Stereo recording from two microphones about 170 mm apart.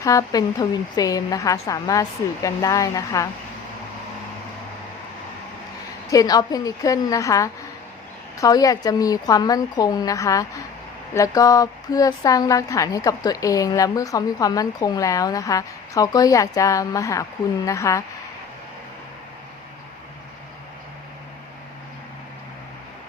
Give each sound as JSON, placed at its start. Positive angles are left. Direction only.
{"t": 0.0, "sound": "a woman's voice", "side_deg": 20}
{"t": 6.1, "sound": "a woman's voice", "side_deg": 20}